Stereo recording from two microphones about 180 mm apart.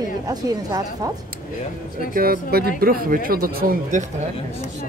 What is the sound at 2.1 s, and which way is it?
Speech, 55° right (ahead or behind).